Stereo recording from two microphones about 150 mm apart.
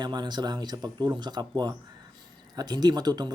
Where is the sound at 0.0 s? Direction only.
30° right (ahead or behind).